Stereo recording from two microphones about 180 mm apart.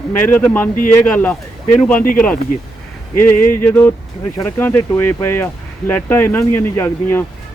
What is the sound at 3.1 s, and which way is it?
Speech, 10° left (ahead or behind).